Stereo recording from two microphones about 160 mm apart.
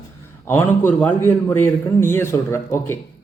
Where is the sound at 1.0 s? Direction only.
10° left (ahead or behind).